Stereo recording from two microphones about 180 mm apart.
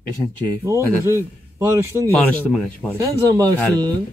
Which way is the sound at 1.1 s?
15° right (ahead or behind).